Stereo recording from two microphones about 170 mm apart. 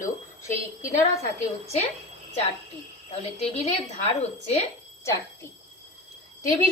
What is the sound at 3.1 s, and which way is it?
A woman's voice, 35° left (ahead or behind).